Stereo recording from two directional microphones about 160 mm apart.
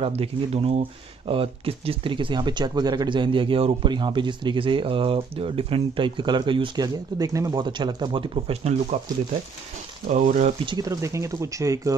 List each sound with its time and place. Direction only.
0.0 s speech: 40° right (ahead or behind)
10.1 s speech: 55° right (ahead or behind)
10.6 s speech: 25° right (ahead or behind)